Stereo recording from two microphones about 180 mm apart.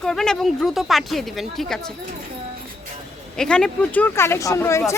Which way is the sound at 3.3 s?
5° left (ahead or behind).